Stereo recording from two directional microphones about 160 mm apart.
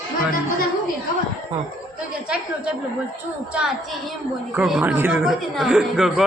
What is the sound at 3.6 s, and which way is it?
A woman's voice, 5° right (ahead or behind).